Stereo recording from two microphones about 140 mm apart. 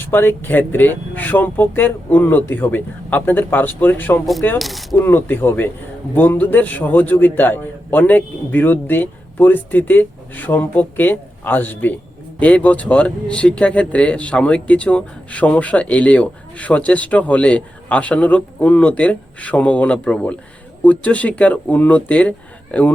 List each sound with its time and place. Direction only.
0.0 s speech: 15° left (ahead or behind)
4.5 s speech: centre (ahead or behind)
4.9 s speech: 15° left (ahead or behind)